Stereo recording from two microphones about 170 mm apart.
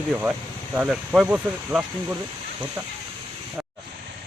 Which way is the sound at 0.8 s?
5° right (ahead or behind).